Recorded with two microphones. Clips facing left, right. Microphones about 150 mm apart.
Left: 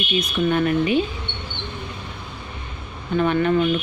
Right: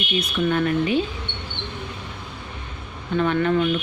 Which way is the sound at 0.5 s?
20° left (ahead or behind).